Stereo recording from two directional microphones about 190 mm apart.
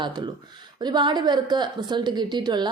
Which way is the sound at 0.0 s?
25° right (ahead or behind).